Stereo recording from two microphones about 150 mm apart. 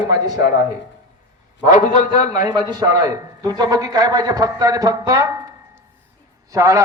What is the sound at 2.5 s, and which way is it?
A man's voice, 30° right (ahead or behind).